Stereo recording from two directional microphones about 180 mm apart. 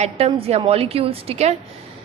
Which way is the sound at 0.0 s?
35° right (ahead or behind).